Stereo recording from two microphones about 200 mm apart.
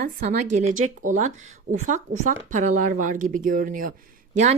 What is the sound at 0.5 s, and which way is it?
A woman's voice, 35° right (ahead or behind).